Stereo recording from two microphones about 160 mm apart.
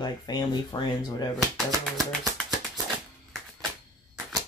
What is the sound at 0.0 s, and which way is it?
Speech, 25° left (ahead or behind).